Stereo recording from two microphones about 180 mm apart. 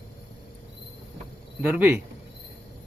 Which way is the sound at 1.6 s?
10° right (ahead or behind).